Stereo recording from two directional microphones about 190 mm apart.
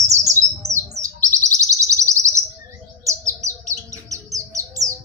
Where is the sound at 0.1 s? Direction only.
15° right (ahead or behind).